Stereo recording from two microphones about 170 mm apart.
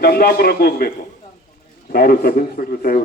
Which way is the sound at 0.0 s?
65° left (ahead or behind).